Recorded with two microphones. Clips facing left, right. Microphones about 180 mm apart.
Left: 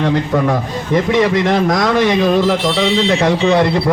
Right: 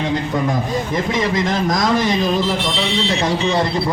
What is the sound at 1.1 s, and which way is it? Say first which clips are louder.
A man's voice: left 6 dB; 65° left (ahead or behind).